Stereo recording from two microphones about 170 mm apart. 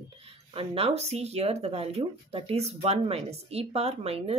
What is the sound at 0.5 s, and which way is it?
Speech, 35° right (ahead or behind).